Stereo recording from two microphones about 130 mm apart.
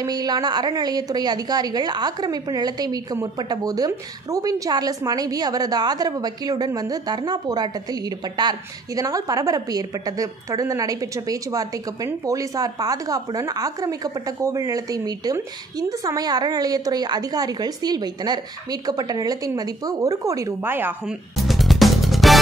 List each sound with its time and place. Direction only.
0.0 s a woman's voice: 30° right (ahead or behind)
21.0 s music: 5° right (ahead or behind)